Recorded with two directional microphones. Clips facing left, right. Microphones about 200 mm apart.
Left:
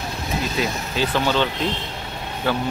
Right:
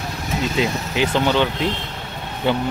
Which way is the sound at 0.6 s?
20° right (ahead or behind).